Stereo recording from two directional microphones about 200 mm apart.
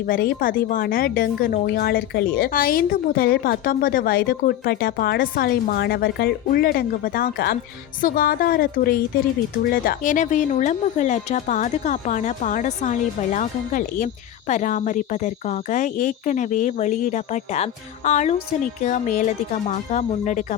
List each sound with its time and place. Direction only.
0.1 s a woman's voice: 45° left (ahead or behind)